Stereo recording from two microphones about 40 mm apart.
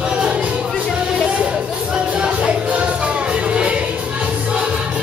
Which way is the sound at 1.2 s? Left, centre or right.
Right.